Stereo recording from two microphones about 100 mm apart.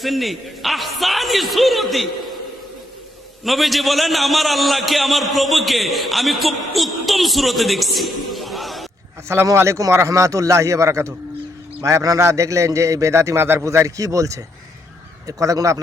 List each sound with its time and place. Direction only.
0.0 s a man's voice: centre (ahead or behind)
3.4 s a man's voice: centre (ahead or behind)
9.3 s a man's voice: 25° right (ahead or behind)